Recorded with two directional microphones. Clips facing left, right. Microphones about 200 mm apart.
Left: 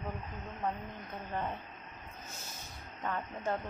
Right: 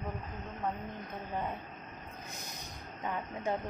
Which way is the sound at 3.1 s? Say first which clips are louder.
Right 1 dB; 10° right (ahead or behind).